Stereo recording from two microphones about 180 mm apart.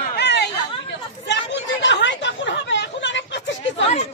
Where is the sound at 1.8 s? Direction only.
80° left.